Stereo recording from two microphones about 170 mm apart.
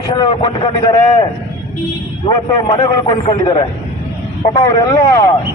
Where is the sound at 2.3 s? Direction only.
25° left (ahead or behind).